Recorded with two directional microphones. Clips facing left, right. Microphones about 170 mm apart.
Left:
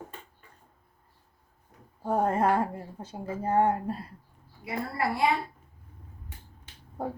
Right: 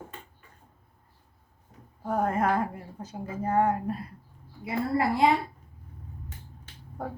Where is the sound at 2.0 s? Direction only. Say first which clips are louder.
Left 1 dB; 30° left (ahead or behind).